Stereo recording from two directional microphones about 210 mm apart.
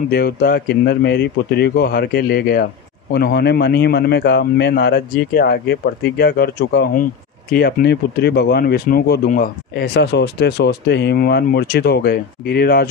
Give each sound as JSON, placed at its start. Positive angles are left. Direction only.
{"t": 0.1, "sound": "speech", "side_deg": 45}